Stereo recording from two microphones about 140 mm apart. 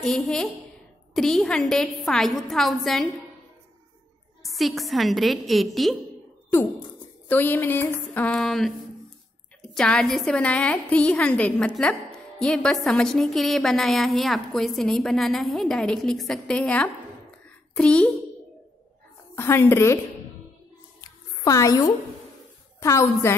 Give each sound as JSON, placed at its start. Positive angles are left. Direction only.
{"t": 0.0, "sound": "a woman's voice", "side_deg": 5}
{"t": 4.4, "sound": "a woman's voice", "side_deg": 0}
{"t": 7.2, "sound": "a woman's voice", "side_deg": 15}
{"t": 19.3, "sound": "a woman's voice", "side_deg": 20}
{"t": 21.0, "sound": "music", "side_deg": 25}
{"t": 22.8, "sound": "a woman's voice", "side_deg": 20}